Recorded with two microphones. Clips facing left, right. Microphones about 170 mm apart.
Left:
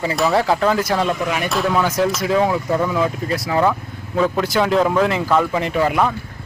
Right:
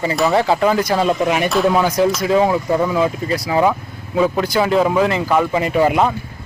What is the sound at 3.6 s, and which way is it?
Speech, 10° right (ahead or behind).